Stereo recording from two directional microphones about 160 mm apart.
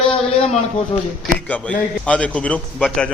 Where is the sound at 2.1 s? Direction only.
10° left (ahead or behind).